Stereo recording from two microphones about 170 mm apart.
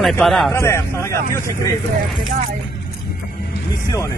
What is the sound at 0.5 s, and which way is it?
Speech, 15° left (ahead or behind).